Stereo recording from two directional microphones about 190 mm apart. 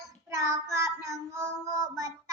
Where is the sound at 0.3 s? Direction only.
15° right (ahead or behind).